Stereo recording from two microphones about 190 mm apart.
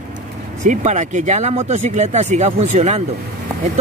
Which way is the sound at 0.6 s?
40° right (ahead or behind).